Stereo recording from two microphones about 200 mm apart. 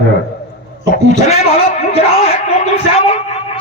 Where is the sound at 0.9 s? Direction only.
35° left (ahead or behind).